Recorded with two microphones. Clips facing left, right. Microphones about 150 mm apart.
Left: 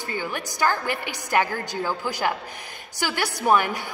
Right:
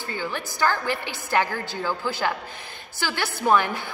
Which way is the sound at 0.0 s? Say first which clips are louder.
Left 1 dB; 15° left (ahead or behind).